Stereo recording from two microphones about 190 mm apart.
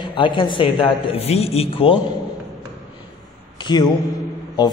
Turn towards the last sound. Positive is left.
turn(degrees=20)  # may be behind; listen again after turning